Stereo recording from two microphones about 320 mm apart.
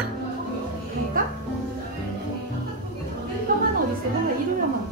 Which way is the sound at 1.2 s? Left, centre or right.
Right.